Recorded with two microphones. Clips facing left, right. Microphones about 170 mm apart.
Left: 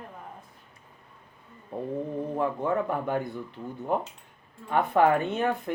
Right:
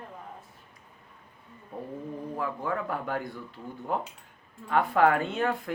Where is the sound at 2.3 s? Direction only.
25° left (ahead or behind).